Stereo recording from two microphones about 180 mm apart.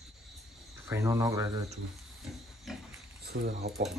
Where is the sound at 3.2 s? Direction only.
65° right (ahead or behind).